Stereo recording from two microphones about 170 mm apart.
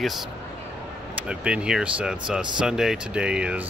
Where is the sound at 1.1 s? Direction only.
5° right (ahead or behind).